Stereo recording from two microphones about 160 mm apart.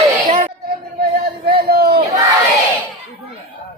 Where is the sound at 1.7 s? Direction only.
75° right (ahead or behind).